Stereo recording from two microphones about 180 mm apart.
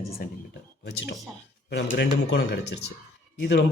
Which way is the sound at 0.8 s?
75° left (ahead or behind).